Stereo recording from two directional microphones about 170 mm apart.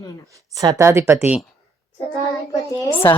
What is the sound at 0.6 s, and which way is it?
Speech, 20° right (ahead or behind).